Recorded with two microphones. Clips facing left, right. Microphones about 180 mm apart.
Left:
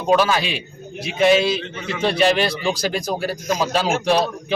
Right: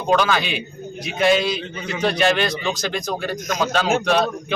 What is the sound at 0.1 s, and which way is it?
A man's voice, 5° left (ahead or behind).